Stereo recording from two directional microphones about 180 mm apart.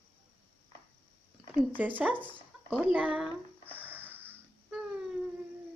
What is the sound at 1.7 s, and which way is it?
Speech, 10° right (ahead or behind).